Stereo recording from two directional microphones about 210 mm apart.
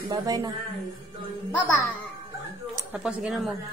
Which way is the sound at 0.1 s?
15° right (ahead or behind).